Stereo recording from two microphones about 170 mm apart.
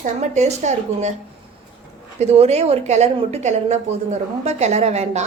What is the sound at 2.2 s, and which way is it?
A woman's voice, 40° right (ahead or behind).